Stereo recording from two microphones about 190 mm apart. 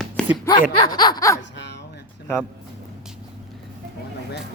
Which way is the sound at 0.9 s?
20° left (ahead or behind).